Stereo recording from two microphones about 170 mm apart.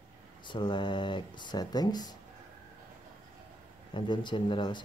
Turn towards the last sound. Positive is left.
turn(degrees=25)  # may be behind; listen again after turning